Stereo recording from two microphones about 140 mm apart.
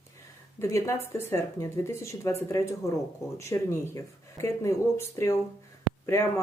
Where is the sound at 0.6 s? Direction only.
20° left (ahead or behind).